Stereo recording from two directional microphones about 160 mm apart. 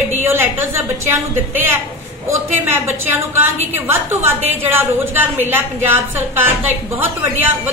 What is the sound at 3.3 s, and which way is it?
A woman's voice, 15° right (ahead or behind).